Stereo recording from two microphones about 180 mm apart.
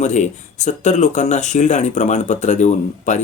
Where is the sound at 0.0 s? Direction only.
40° left (ahead or behind).